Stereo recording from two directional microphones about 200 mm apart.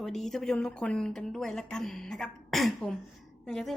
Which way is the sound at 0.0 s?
Centre (ahead or behind).